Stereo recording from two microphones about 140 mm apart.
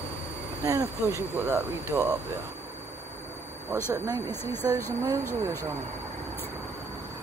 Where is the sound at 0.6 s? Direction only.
20° right (ahead or behind).